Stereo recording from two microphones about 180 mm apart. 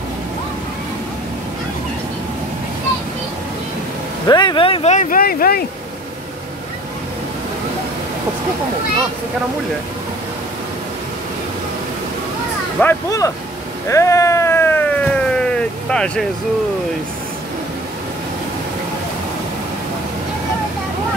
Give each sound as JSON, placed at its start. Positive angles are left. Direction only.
{"t": 4.3, "sound": "speech", "side_deg": 25}
{"t": 12.8, "sound": "speech", "side_deg": 20}
{"t": 13.8, "sound": "vehicle", "side_deg": 15}